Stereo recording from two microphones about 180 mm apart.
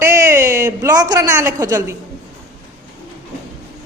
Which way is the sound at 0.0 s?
15° right (ahead or behind).